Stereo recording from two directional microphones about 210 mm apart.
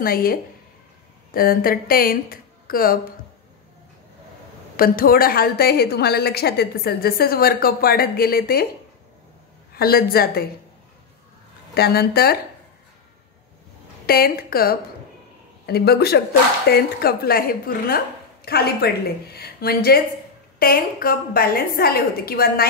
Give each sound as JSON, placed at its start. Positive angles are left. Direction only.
{"t": 0.0, "sound": "a woman's voice", "side_deg": 45}
{"t": 4.7, "sound": "a woman's voice", "side_deg": 45}
{"t": 9.8, "sound": "a woman's voice", "side_deg": 45}
{"t": 11.7, "sound": "a woman's voice", "side_deg": 50}
{"t": 14.0, "sound": "a woman's voice", "side_deg": 45}